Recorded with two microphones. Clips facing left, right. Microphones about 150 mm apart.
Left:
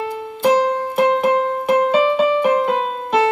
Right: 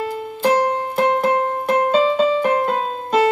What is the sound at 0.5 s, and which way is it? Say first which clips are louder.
Music: left 2 dB; 5° left (ahead or behind).